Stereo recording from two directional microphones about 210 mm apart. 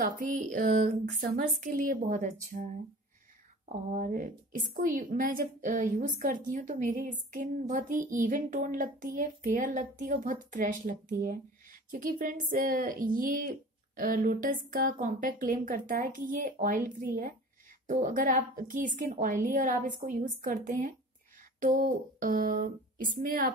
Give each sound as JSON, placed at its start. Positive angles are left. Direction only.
{"t": 0.0, "sound": "a woman's voice", "side_deg": -40}